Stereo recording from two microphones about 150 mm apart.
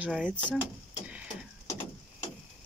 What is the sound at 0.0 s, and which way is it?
Speech, 10° right (ahead or behind).